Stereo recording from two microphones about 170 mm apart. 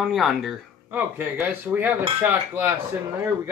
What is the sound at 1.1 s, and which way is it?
Cutlery, 10° right (ahead or behind).